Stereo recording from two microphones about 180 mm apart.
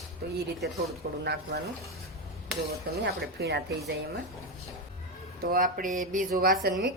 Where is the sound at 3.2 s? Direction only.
65° right (ahead or behind).